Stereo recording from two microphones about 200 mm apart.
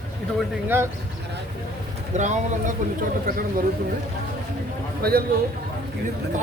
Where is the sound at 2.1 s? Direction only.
35° right (ahead or behind).